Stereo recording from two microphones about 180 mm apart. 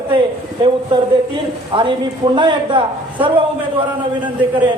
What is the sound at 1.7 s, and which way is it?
Speech, 30° right (ahead or behind).